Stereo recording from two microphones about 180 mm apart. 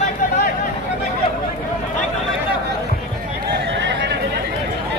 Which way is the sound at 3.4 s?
80° right.